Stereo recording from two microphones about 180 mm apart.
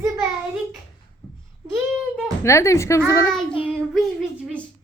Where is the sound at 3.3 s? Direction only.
5° left (ahead or behind).